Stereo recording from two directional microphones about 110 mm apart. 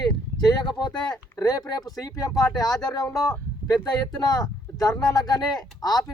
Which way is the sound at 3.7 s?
40° left (ahead or behind).